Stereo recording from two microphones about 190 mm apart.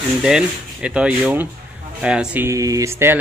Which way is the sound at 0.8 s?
5° right (ahead or behind).